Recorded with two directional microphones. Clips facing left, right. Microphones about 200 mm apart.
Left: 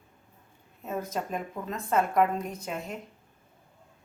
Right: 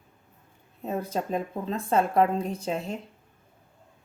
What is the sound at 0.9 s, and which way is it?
A woman's voice, 30° right (ahead or behind).